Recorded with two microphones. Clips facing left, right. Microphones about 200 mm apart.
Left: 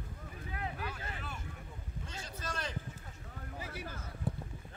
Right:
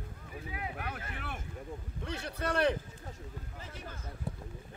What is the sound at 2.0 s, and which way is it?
Speech, 65° right (ahead or behind).